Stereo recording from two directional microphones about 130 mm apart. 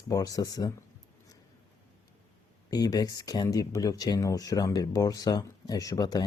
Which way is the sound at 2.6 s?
30° left (ahead or behind).